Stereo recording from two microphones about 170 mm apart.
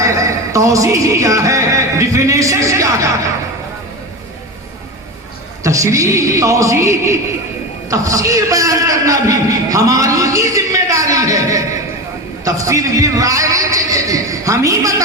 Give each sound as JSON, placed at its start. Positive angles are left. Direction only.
{"t": 0.0, "sound": "music", "side_deg": -20}
{"t": 5.6, "sound": "a man's voice", "side_deg": -20}